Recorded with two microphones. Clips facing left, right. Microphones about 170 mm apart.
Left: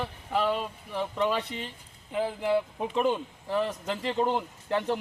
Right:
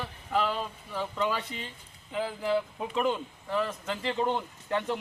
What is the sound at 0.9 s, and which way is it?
Speech, 25° left (ahead or behind).